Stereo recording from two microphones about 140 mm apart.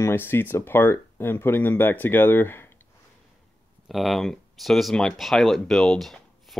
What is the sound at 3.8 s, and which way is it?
Speech, centre (ahead or behind).